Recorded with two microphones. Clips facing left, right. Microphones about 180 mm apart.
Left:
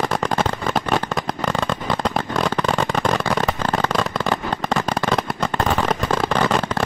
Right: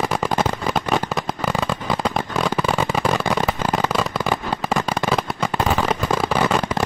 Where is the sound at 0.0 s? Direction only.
5° right (ahead or behind).